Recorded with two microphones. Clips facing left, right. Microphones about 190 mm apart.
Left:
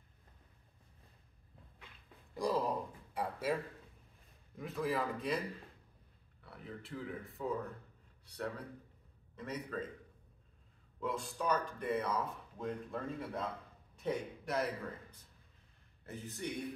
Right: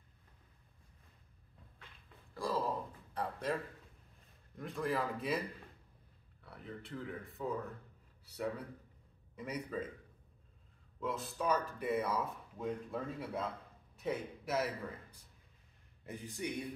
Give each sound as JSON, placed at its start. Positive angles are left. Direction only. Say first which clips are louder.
{"t": 2.3, "sound": "speech", "louder": "left 2 dB", "side_deg": 15}
{"t": 4.6, "sound": "speech", "louder": "even", "side_deg": 0}
{"t": 6.4, "sound": "speech", "louder": "even", "side_deg": 0}
{"t": 9.4, "sound": "a man's voice", "louder": "right 1 dB", "side_deg": -10}
{"t": 11.0, "sound": "a man's voice", "louder": "even", "side_deg": 0}